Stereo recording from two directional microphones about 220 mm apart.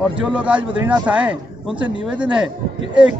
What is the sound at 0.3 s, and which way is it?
A man's voice, 5° right (ahead or behind).